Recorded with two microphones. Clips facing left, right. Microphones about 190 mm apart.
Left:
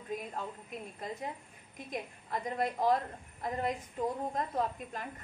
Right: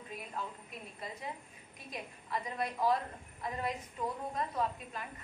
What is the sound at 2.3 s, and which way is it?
Speech, 45° left (ahead or behind).